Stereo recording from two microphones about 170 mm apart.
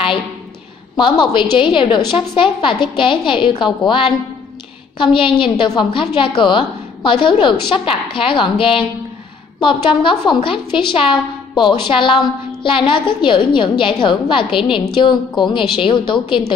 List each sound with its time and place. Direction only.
0.9 s a woman's voice: 25° left (ahead or behind)